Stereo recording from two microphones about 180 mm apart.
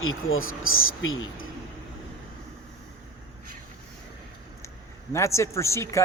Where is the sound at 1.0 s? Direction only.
90° left.